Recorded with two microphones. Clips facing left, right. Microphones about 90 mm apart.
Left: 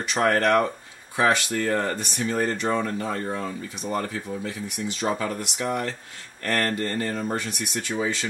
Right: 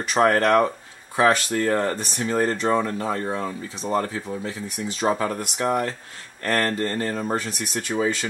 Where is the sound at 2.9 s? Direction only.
25° right (ahead or behind).